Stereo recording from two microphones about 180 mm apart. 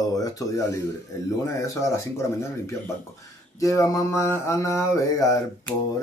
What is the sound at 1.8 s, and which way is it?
Mantra, 15° left (ahead or behind).